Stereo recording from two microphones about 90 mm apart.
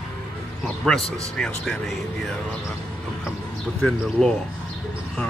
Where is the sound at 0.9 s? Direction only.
Centre (ahead or behind).